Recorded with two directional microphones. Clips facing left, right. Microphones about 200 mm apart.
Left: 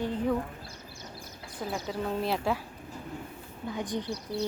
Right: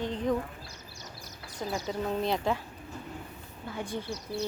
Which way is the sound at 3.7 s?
15° left (ahead or behind).